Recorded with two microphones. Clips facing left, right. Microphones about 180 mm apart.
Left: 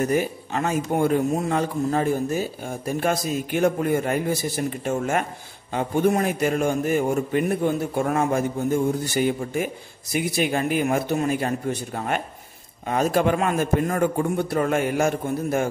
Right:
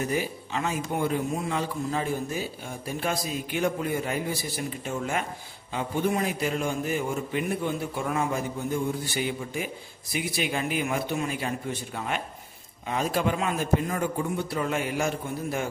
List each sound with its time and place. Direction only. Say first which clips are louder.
0.0 s a man's voice: left 6 dB; 50° left (ahead or behind)